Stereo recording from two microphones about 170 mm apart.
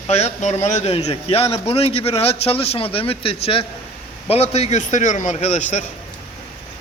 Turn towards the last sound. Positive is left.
turn(degrees=45)  # may be behind; listen again after turning